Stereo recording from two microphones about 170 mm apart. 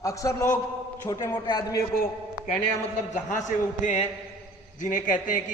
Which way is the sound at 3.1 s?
45° left (ahead or behind).